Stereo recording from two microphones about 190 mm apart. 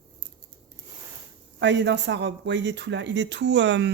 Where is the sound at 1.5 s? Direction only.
70° right (ahead or behind).